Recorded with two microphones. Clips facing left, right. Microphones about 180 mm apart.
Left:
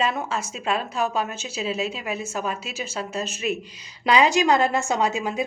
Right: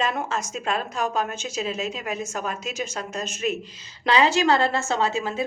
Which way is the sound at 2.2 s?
10° left (ahead or behind).